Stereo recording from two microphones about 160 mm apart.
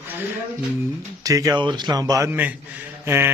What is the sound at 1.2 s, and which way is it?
A man's voice, 20° right (ahead or behind).